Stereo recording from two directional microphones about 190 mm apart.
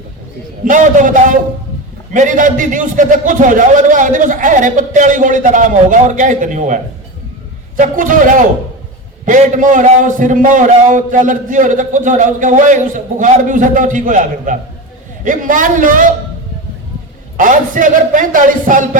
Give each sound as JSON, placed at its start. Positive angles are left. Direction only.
{"t": 0.6, "sound": "a man's voice", "side_deg": -40}
{"t": 7.8, "sound": "a man's voice", "side_deg": -45}
{"t": 17.3, "sound": "a man's voice", "side_deg": -45}